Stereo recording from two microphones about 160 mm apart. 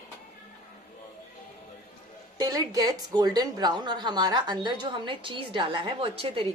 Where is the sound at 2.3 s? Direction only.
25° right (ahead or behind).